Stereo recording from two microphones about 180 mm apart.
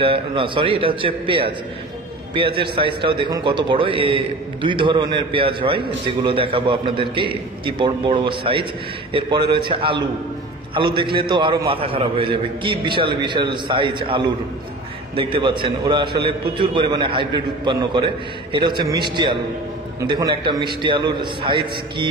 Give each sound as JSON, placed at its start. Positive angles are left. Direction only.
{"t": 0.0, "sound": "a man's voice", "side_deg": -30}